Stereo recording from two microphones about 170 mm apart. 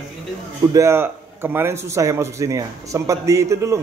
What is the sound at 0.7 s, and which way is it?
A man's voice, 15° right (ahead or behind).